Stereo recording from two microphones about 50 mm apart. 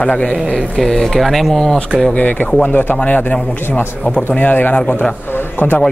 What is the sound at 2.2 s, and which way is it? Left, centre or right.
Speech, left.